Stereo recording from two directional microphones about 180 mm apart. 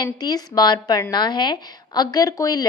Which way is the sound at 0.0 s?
20° left (ahead or behind).